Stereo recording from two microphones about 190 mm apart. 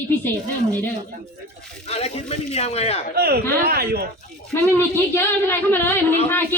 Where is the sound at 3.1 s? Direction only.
55° right (ahead or behind).